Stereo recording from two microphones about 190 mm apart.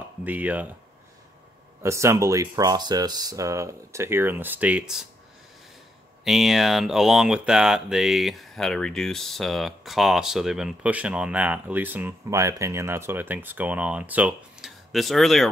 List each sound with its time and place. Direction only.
0.2 s speech: 10° right (ahead or behind)
1.8 s speech: 15° right (ahead or behind)
6.2 s speech: centre (ahead or behind)